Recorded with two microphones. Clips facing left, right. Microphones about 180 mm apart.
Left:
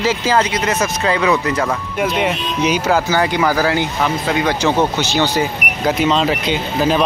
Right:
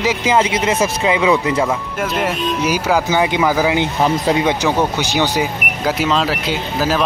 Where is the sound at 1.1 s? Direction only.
15° right (ahead or behind).